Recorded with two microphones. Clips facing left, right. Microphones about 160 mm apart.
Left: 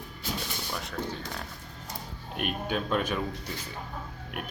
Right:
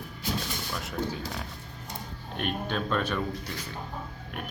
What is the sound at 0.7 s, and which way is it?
Speech, centre (ahead or behind).